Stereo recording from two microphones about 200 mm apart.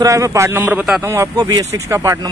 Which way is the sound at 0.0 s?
15° right (ahead or behind).